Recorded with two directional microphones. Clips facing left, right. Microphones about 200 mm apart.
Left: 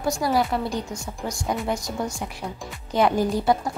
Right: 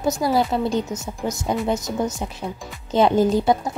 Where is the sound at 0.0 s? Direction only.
20° right (ahead or behind).